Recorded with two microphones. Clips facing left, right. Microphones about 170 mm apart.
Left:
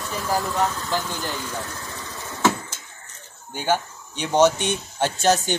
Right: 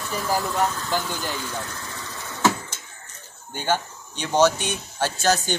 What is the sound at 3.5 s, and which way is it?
Speech, 10° left (ahead or behind).